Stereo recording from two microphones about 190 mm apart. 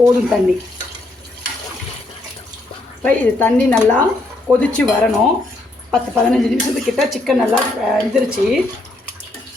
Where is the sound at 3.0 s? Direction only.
10° left (ahead or behind).